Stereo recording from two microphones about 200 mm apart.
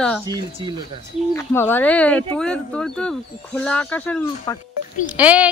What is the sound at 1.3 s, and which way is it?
Speech, 10° left (ahead or behind).